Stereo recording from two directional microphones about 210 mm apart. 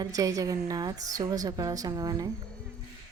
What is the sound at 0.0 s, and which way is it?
Speech, 15° right (ahead or behind).